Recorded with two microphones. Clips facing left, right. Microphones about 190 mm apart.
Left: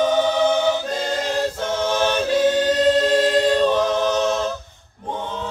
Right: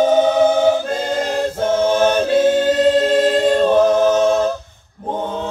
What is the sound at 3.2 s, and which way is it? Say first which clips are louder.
A capella: right 3 dB; 50° right (ahead or behind).